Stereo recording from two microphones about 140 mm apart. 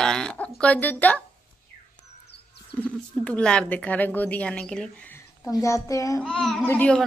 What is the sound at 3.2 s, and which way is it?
A woman's voice, 10° left (ahead or behind).